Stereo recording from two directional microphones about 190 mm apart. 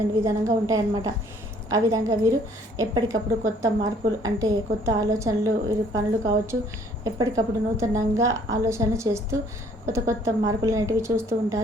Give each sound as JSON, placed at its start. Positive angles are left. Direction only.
{"t": 0.2, "sound": "a woman's voice", "side_deg": -15}